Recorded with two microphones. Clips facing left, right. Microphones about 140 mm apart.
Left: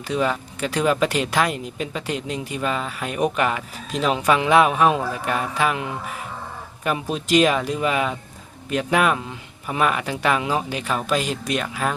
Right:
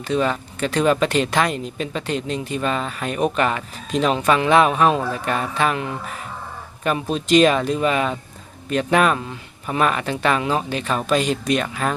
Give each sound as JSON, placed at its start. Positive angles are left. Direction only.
{"t": 0.1, "sound": "speech", "side_deg": 10}